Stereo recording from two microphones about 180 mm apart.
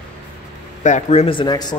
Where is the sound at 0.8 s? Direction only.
40° left (ahead or behind); by 1.7 s 25° left (ahead or behind).